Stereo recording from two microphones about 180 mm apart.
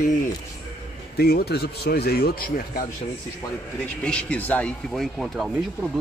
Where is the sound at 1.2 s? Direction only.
60° left (ahead or behind).